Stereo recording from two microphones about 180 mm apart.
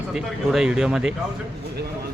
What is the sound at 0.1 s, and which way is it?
Speech, 5° right (ahead or behind).